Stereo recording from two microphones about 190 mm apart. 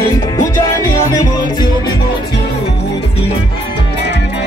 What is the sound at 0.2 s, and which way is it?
Music, 20° left (ahead or behind).